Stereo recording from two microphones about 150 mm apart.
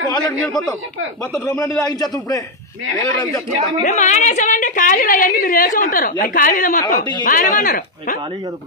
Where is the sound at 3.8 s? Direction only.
55° left (ahead or behind).